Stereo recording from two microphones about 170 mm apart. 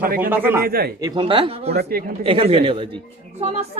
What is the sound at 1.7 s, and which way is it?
Speech, 70° right (ahead or behind).